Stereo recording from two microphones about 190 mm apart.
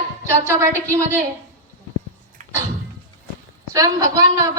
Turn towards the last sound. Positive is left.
turn(degrees=-20)  # may be behind; listen again after turning